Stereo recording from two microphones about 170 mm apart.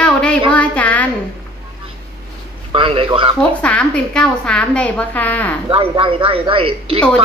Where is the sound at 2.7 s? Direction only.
30° right (ahead or behind).